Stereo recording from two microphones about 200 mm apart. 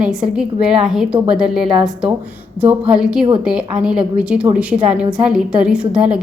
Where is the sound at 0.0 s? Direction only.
5° right (ahead or behind).